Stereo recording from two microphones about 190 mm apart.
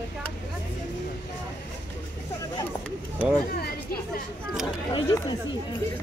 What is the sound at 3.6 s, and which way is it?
Chatter, 55° left (ahead or behind).